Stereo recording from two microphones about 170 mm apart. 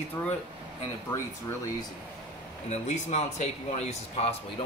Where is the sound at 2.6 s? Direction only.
40° left (ahead or behind).